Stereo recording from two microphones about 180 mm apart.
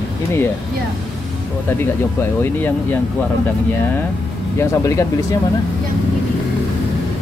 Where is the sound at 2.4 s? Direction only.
10° left (ahead or behind).